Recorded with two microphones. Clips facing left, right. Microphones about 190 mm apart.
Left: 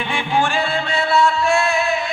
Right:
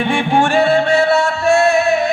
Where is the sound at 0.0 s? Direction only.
65° right (ahead or behind).